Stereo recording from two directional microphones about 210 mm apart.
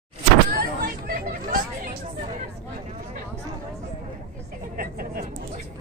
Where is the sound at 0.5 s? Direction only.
45° right (ahead or behind).